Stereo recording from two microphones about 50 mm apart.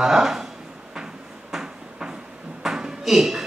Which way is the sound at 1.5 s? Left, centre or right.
Centre.